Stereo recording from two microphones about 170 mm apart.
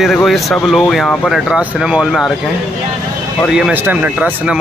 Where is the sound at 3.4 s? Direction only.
5° right (ahead or behind).